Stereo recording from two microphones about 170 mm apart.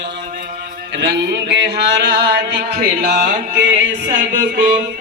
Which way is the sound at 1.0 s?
75° right (ahead or behind).